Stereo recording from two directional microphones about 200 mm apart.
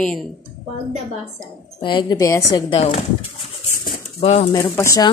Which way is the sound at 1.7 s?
20° left (ahead or behind).